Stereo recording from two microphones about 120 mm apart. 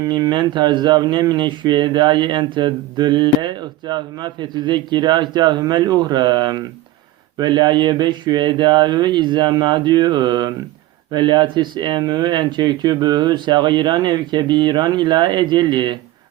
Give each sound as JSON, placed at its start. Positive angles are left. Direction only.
{"t": 0.0, "sound": "speech", "side_deg": -35}